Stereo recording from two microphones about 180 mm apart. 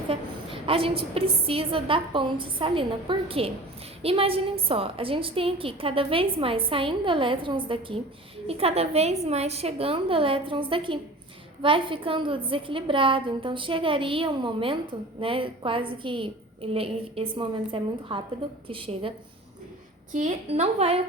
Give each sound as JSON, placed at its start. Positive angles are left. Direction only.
{"t": 0.1, "sound": "a woman's voice", "side_deg": -30}
{"t": 20.1, "sound": "a woman's voice", "side_deg": -40}